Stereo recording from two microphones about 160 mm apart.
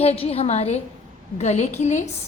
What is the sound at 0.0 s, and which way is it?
A woman's voice, 40° left (ahead or behind).